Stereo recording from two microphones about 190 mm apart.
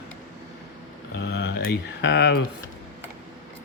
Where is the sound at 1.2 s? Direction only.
65° left (ahead or behind).